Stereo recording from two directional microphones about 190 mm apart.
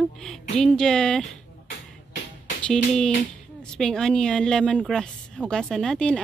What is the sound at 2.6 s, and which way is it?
A woman's voice, 5° left (ahead or behind).